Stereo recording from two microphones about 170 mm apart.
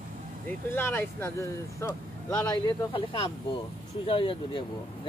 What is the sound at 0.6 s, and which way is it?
Speech, 15° left (ahead or behind).